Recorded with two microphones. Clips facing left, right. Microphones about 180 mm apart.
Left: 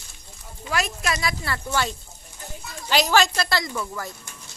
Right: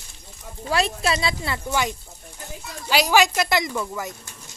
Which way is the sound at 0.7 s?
30° right (ahead or behind).